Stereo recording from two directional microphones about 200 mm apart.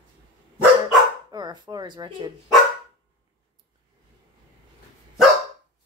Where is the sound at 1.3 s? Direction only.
20° right (ahead or behind).